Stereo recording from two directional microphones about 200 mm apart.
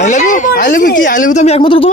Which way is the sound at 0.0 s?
40° left (ahead or behind).